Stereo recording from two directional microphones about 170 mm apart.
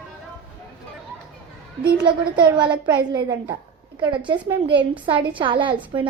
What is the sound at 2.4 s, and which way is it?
A woman's voice, 25° right (ahead or behind).